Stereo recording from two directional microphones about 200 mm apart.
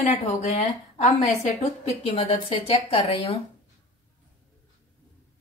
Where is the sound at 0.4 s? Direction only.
35° left (ahead or behind).